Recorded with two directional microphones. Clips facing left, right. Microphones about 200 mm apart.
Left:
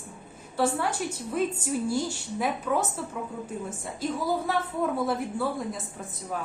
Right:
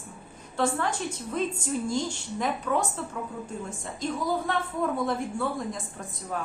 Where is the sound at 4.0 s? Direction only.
5° left (ahead or behind).